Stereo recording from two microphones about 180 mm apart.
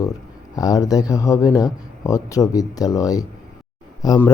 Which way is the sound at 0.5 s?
20° left (ahead or behind).